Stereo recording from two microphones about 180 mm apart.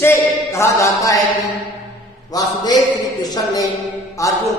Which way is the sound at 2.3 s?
25° left (ahead or behind).